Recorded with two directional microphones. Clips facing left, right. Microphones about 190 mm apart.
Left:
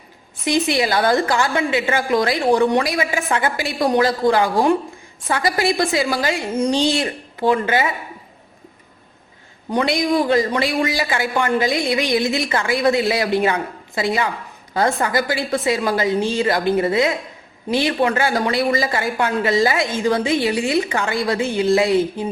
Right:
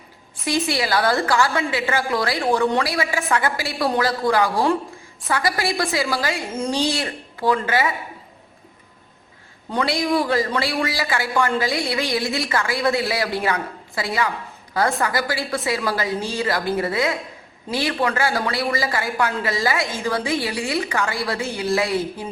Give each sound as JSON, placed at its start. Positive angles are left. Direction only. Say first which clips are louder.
{"t": 0.4, "sound": "speech", "louder": "left 4 dB", "side_deg": 20}
{"t": 9.6, "sound": "a woman's voice", "louder": "left 3 dB", "side_deg": 20}